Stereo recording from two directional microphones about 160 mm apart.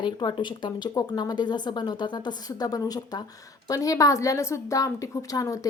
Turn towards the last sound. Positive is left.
turn(degrees=20)  # may be behind; listen again after turning